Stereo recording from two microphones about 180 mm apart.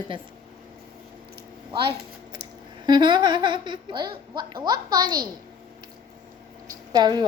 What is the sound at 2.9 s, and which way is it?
Speech, 25° right (ahead or behind).